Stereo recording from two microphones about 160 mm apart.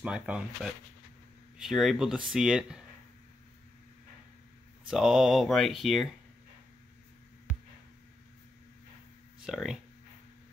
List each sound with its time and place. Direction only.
0.0 s speech: 5° right (ahead or behind)
4.8 s speech: 5° right (ahead or behind)
9.4 s speech: 5° right (ahead or behind)